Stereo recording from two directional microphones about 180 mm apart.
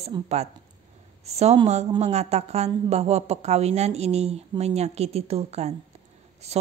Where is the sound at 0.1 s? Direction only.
25° right (ahead or behind).